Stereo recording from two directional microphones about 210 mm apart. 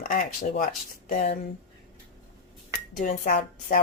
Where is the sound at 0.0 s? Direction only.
45° left (ahead or behind).